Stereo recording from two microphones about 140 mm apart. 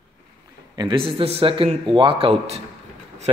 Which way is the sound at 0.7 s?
35° right (ahead or behind).